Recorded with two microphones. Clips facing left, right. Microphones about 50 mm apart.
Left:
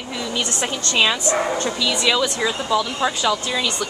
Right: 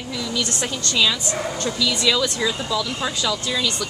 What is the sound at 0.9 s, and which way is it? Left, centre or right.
Speech, left.